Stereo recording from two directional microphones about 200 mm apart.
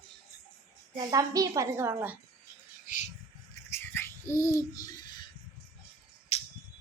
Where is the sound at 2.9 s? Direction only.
40° left (ahead or behind).